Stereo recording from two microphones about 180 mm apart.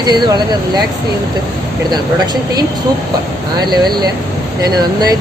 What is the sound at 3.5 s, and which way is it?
Speech, 25° right (ahead or behind).